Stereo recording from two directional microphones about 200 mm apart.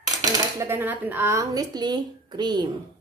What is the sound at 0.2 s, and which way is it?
Speech, 15° right (ahead or behind).